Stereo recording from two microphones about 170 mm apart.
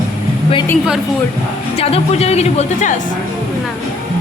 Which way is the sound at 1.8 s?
40° left (ahead or behind).